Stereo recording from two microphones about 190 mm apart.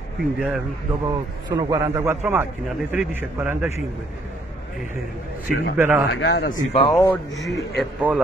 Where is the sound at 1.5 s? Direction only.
15° right (ahead or behind).